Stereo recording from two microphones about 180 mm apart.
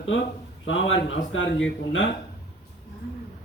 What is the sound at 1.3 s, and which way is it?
Speech, 90° left.